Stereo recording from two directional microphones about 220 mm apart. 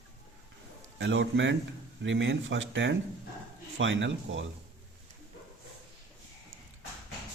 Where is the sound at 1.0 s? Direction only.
60° right (ahead or behind).